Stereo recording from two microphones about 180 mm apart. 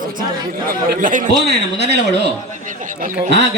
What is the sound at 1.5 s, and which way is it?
Speech, 65° right (ahead or behind).